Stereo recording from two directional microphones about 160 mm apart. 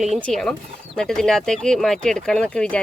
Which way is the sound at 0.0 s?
5° left (ahead or behind).